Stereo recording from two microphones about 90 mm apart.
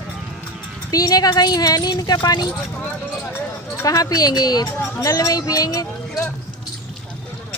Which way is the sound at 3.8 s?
40° left (ahead or behind).